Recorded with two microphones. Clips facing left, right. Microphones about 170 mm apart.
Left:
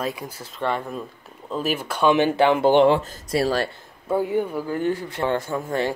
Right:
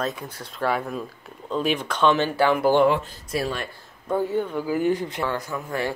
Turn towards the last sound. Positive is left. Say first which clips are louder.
# left 4 dB
turn(degrees=25)  # may be behind; listen again after turning